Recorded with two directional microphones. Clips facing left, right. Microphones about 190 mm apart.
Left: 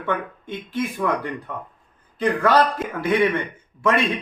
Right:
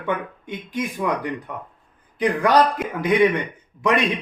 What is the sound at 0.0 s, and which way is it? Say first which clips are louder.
Speech: even; 15° right (ahead or behind).